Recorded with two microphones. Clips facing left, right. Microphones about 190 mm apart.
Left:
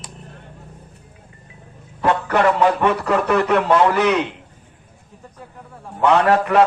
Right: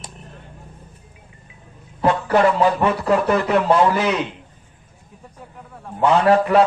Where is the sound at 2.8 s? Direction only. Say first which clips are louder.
Even; 65° left (ahead or behind).